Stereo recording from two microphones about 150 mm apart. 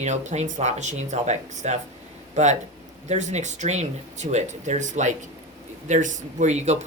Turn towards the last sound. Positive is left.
turn(degrees=-50)  # may be behind; listen again after turning